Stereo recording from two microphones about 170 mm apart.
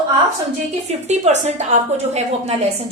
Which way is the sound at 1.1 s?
40° right (ahead or behind).